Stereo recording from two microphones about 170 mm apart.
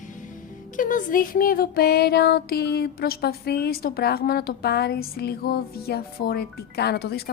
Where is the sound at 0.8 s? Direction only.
50° left (ahead or behind).